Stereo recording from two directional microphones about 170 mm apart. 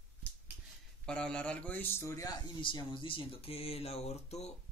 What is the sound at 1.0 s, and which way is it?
Speech, 5° left (ahead or behind).